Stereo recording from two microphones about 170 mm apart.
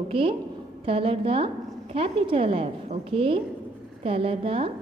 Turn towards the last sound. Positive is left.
turn(degrees=-35)  # may be behind; listen again after turning